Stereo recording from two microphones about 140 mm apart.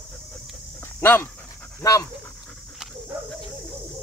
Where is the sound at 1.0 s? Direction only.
15° left (ahead or behind).